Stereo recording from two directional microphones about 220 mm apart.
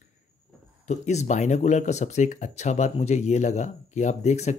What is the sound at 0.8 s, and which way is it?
Speech, 30° left (ahead or behind).